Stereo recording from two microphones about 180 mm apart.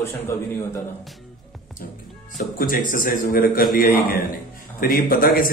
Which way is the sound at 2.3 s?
50° left (ahead or behind).